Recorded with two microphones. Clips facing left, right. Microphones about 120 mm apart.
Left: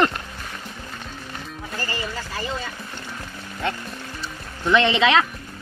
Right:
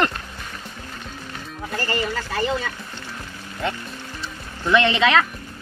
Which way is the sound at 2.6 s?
60° right (ahead or behind).